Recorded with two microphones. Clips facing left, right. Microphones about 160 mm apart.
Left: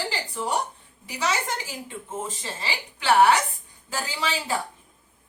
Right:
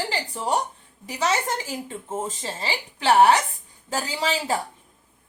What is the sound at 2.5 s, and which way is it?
Speech, 40° right (ahead or behind).